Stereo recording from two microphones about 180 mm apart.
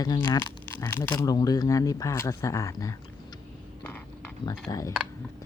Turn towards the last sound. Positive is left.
turn(degrees=20)  # may be behind; listen again after turning